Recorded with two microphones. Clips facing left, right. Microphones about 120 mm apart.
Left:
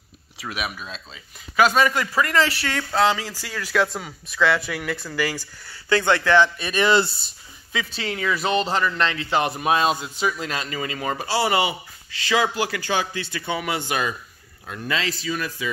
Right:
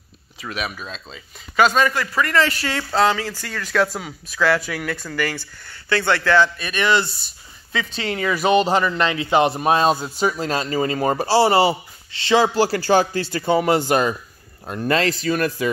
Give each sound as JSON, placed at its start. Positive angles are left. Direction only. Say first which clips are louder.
{"t": 0.4, "sound": "speech", "louder": "right 2 dB", "side_deg": 10}
{"t": 2.6, "sound": "speech", "louder": "right 2 dB", "side_deg": -5}
{"t": 3.0, "sound": "speech", "louder": "right 2 dB", "side_deg": 10}
{"t": 3.8, "sound": "speech", "louder": "right 2 dB", "side_deg": 0}
{"t": 5.9, "sound": "speech", "louder": "even", "side_deg": 15}
{"t": 6.7, "sound": "speech", "louder": "left 1 dB", "side_deg": 30}
{"t": 7.7, "sound": "a man's voice", "louder": "right 3 dB", "side_deg": 5}
{"t": 9.6, "sound": "speech", "louder": "right 3 dB", "side_deg": -35}